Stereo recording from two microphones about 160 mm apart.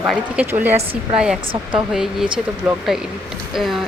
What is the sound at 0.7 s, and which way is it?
Speech, 35° right (ahead or behind).